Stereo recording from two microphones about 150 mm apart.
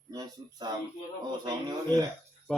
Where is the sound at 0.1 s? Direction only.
25° right (ahead or behind).